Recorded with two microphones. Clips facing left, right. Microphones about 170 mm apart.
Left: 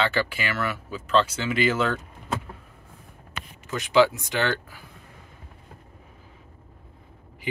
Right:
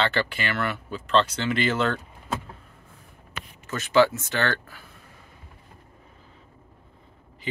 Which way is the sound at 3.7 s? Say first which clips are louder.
Even; 15° left (ahead or behind).